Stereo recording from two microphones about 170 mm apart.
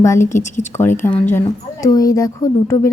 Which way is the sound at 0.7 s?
15° left (ahead or behind).